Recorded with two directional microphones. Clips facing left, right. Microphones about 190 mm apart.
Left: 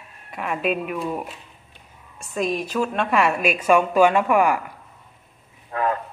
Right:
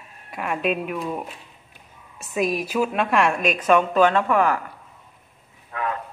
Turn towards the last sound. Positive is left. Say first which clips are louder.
# left 5 dB
turn(degrees=35)  # may be behind; listen again after turning